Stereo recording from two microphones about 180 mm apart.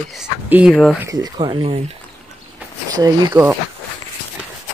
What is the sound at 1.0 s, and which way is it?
Speech, 20° right (ahead or behind).